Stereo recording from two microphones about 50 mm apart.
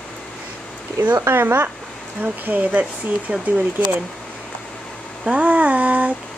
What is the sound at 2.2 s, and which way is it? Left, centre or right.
Speech, right.